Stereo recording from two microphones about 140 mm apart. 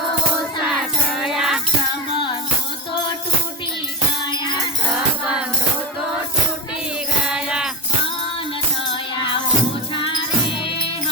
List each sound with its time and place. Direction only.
0.6 s music: 5° right (ahead or behind)
5.2 s music: 10° right (ahead or behind)
7.3 s music: 5° right (ahead or behind)
9.9 s music: 35° left (ahead or behind)